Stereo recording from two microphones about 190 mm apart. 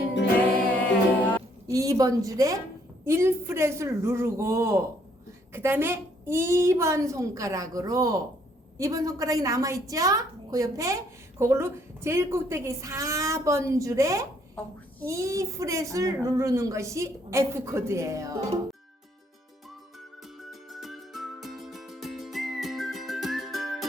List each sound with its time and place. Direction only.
1.2 s a sound: 5° left (ahead or behind)
1.6 s a woman's voice: 15° right (ahead or behind)
14.6 s a child's voice: 5° left (ahead or behind)
15.0 s a woman's voice: 15° right (ahead or behind)
20.4 s music: centre (ahead or behind)